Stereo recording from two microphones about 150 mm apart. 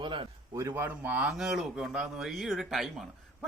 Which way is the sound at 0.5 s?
15° right (ahead or behind).